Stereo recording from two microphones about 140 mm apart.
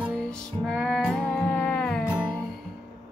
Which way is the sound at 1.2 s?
10° left (ahead or behind).